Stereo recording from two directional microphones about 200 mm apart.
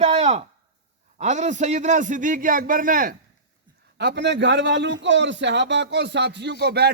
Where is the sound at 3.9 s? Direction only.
55° right (ahead or behind).